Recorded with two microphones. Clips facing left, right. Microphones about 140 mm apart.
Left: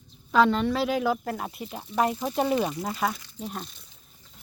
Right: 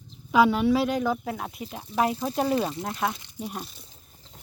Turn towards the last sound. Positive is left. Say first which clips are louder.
# right 4 dB
turn(degrees=-30)  # may be behind; listen again after turning